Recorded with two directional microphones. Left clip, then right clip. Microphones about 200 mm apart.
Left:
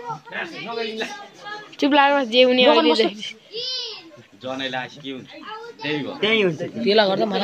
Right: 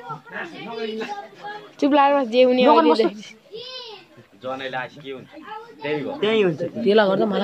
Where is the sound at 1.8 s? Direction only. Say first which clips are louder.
Even; 5° right (ahead or behind).